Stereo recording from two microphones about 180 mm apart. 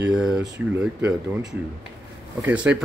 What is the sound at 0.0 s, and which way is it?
Speech, 5° right (ahead or behind).